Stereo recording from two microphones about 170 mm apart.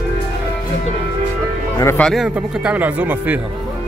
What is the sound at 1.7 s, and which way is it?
Speech, 15° left (ahead or behind).